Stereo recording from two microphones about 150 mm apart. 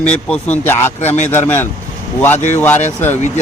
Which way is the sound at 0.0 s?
5° left (ahead or behind).